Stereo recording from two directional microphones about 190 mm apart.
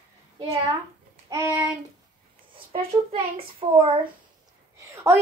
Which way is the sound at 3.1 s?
30° right (ahead or behind).